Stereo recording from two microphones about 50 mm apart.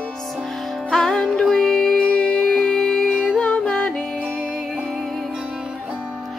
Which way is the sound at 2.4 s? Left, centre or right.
Centre.